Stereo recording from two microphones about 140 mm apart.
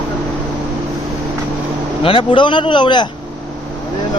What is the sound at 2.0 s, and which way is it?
A man's voice, 40° left (ahead or behind).